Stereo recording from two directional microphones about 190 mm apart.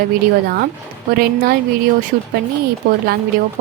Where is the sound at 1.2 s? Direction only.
55° right (ahead or behind).